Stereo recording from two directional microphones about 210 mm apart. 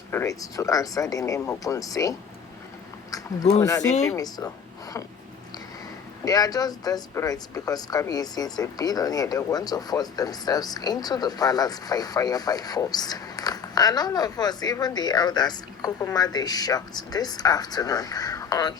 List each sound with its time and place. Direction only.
0.1 s a woman's voice: 15° left (ahead or behind)
6.2 s speech: 20° left (ahead or behind)